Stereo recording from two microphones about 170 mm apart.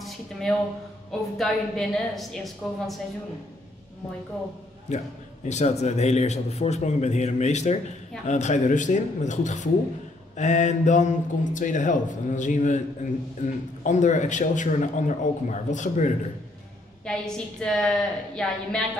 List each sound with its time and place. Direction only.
0.0 s a sound: 5° left (ahead or behind)
1.4 s a woman's voice: centre (ahead or behind)
4.8 s a man's voice: 45° left (ahead or behind)
17.0 s a woman's voice: 5° left (ahead or behind)